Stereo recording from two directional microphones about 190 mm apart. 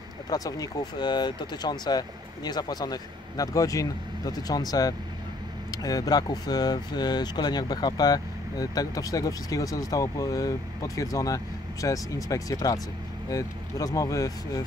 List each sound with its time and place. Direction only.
0.3 s speech: 20° left (ahead or behind)